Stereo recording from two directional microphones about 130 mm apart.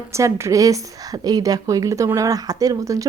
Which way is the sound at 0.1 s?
20° right (ahead or behind).